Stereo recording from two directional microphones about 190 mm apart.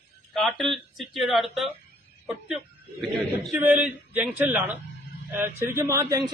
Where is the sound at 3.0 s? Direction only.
Centre (ahead or behind).